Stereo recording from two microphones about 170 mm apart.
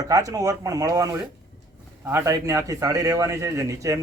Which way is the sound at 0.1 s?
20° right (ahead or behind).